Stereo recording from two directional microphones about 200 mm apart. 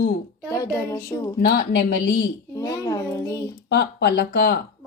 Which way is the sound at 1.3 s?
50° left (ahead or behind).